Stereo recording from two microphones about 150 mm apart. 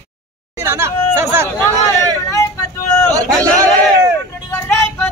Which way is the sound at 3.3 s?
10° left (ahead or behind).